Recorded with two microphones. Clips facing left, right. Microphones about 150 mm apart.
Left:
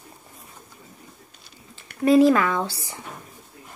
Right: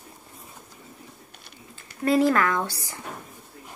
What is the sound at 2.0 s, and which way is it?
Speech, 15° left (ahead or behind).